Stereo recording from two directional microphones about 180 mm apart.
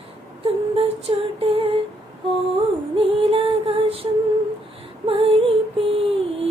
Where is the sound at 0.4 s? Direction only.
30° right (ahead or behind).